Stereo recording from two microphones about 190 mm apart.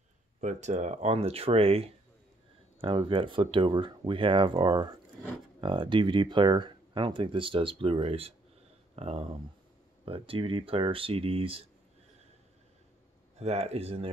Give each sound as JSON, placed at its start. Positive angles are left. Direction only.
{"t": 0.4, "sound": "speech", "side_deg": -40}
{"t": 13.4, "sound": "speech", "side_deg": -35}